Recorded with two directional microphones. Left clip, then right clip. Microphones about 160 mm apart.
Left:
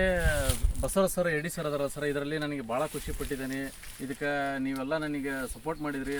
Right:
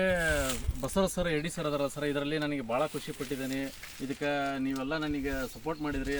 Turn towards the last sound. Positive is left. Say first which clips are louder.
# even
turn(degrees=10)  # may be behind; listen again after turning